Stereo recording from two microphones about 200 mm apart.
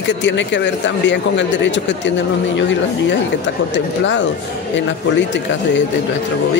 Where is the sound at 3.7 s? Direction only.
65° left (ahead or behind).